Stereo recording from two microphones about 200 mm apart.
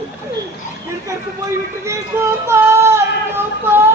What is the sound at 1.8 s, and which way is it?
Speech, 15° right (ahead or behind).